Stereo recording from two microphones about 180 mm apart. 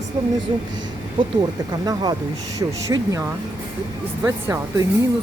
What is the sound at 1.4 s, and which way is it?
Speech, 25° right (ahead or behind).